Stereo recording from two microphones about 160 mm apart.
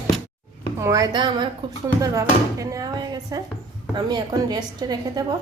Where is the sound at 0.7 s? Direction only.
20° right (ahead or behind).